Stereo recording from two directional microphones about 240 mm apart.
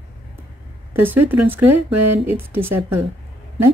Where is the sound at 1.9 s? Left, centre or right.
Right.